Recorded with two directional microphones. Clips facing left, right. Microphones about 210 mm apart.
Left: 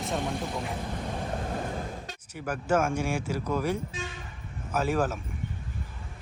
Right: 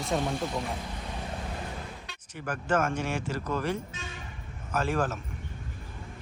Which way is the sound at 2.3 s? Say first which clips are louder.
Left 2 dB; 10° left (ahead or behind).